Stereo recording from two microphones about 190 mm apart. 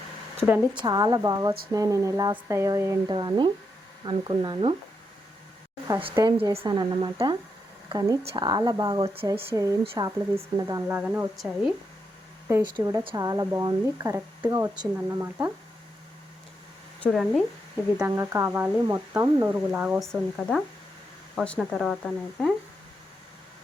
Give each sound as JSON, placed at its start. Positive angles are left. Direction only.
{"t": 0.3, "sound": "speech", "side_deg": -10}
{"t": 0.7, "sound": "speech", "side_deg": -20}
{"t": 5.9, "sound": "speech", "side_deg": -25}
{"t": 13.1, "sound": "speech", "side_deg": -20}
{"t": 17.0, "sound": "speech", "side_deg": 0}
{"t": 18.1, "sound": "speech", "side_deg": -15}
{"t": 20.1, "sound": "speech", "side_deg": 5}